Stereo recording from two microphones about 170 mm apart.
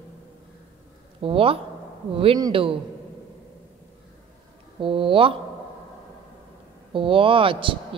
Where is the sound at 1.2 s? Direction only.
35° right (ahead or behind).